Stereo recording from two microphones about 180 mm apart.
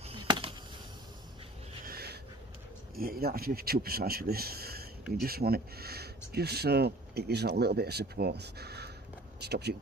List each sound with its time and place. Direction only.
0.0 s chop: 30° right (ahead or behind)
1.9 s a sound: 60° right (ahead or behind)
3.0 s speech: 55° right (ahead or behind)